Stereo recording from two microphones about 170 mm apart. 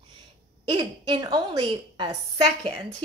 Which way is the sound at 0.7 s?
30° right (ahead or behind).